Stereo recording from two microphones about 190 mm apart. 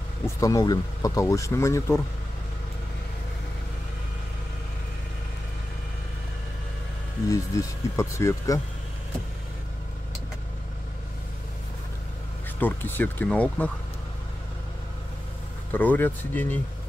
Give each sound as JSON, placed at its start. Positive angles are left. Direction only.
{"t": 0.4, "sound": "speech", "side_deg": 20}
{"t": 7.2, "sound": "speech", "side_deg": 15}
{"t": 12.5, "sound": "speech", "side_deg": 10}
{"t": 15.7, "sound": "speech", "side_deg": 10}